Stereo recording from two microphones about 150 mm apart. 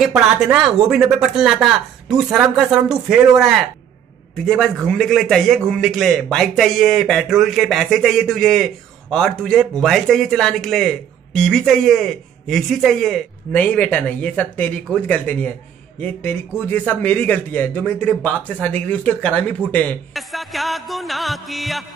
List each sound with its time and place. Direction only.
0.0 s speech: 5° right (ahead or behind)